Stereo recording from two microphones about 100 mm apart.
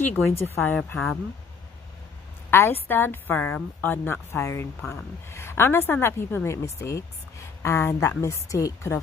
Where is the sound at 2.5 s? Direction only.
25° left (ahead or behind).